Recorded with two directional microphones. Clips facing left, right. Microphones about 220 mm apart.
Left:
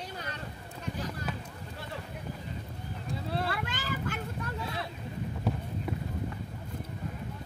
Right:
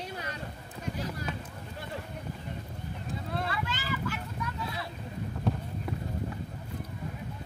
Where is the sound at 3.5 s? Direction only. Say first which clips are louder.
Right 1 dB; 55° left (ahead or behind).